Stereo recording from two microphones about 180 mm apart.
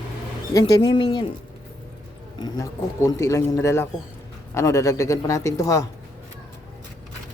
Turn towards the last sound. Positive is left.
turn(degrees=15)  # may be behind; listen again after turning